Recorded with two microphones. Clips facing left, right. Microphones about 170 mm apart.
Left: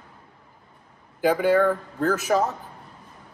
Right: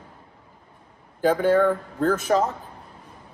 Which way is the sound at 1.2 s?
5° left (ahead or behind).